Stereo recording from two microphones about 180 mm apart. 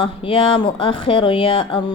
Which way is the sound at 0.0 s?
30° left (ahead or behind).